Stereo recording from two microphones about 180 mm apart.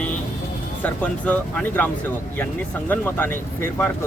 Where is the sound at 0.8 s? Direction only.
5° left (ahead or behind).